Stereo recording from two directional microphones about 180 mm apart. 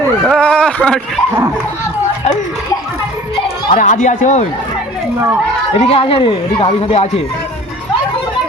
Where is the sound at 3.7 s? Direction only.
45° left (ahead or behind).